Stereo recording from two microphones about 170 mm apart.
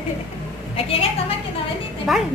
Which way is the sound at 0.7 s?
35° left (ahead or behind).